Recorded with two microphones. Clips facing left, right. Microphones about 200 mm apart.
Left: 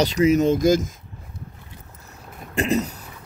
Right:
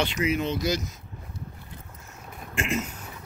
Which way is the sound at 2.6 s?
35° left (ahead or behind).